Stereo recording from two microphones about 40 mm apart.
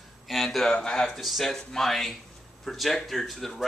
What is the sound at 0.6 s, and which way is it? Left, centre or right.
Speech, centre.